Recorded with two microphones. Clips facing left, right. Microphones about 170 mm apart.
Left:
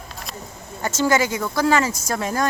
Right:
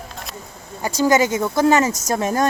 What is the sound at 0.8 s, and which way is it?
Speech, 15° right (ahead or behind).